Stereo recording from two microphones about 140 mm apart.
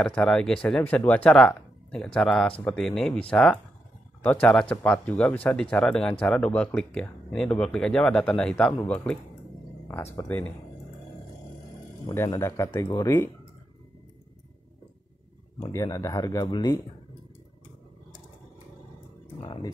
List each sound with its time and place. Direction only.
0.0 s speech: 5° left (ahead or behind)
10.2 s speech: 10° left (ahead or behind)
12.1 s speech: 20° left (ahead or behind)
15.7 s speech: 20° left (ahead or behind)
19.4 s speech: 35° left (ahead or behind)